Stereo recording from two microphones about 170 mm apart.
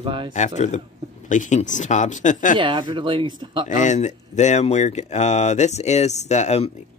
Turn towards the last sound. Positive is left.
turn(degrees=40)  # may be behind; listen again after turning